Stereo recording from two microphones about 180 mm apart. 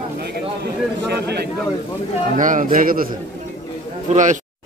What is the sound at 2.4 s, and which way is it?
Speech, 45° right (ahead or behind).